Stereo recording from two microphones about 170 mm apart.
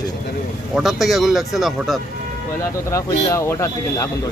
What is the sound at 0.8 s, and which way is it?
Speech, centre (ahead or behind).